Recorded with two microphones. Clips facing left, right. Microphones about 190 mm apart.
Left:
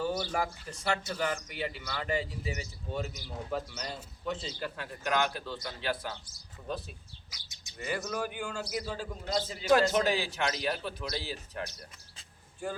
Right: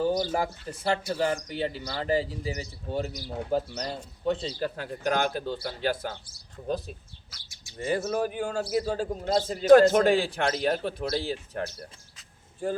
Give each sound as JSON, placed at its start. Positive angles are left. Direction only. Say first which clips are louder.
{"t": 0.0, "sound": "a sound", "louder": "right 7 dB", "side_deg": -35}
{"t": 0.3, "sound": "speech", "louder": "right 4 dB", "side_deg": -30}
{"t": 7.8, "sound": "a man's voice", "louder": "right 7 dB", "side_deg": -30}